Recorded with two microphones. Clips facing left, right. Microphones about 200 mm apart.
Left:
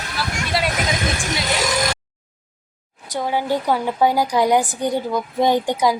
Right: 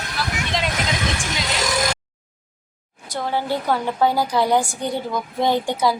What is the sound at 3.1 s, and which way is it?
A woman's voice, 15° left (ahead or behind).